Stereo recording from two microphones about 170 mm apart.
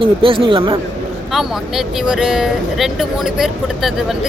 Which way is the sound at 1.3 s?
Centre (ahead or behind).